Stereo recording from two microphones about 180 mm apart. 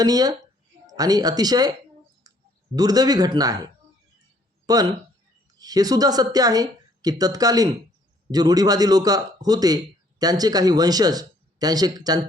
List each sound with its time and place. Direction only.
0.0 s a man's voice: 20° right (ahead or behind)
2.3 s a sound: 20° right (ahead or behind)
2.7 s a man's voice: 20° right (ahead or behind)